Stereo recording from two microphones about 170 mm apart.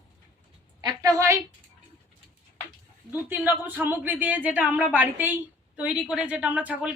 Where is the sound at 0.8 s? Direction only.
20° right (ahead or behind).